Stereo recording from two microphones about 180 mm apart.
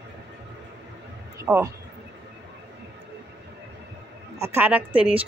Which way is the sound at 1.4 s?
15° right (ahead or behind).